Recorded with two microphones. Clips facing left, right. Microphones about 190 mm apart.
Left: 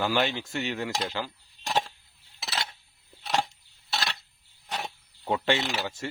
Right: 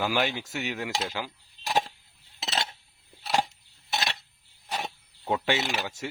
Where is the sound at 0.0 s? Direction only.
5° right (ahead or behind).